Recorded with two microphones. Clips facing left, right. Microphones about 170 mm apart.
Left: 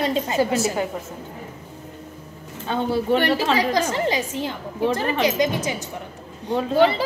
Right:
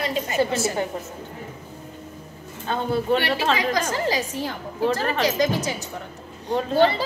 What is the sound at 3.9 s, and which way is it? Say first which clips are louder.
A woman's voice: left 1 dB; 20° left (ahead or behind).